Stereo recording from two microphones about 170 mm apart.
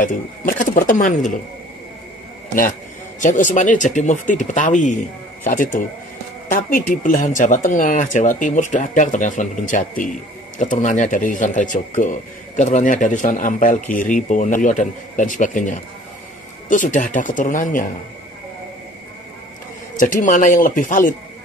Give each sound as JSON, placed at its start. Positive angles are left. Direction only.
{"t": 0.0, "sound": "speech", "side_deg": 50}
{"t": 3.2, "sound": "speech", "side_deg": 50}
{"t": 20.0, "sound": "speech", "side_deg": 50}